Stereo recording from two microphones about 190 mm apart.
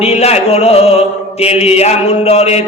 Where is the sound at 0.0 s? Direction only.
35° left (ahead or behind).